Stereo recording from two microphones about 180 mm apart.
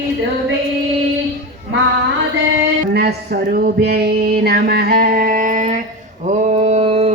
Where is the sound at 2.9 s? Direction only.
60° right (ahead or behind).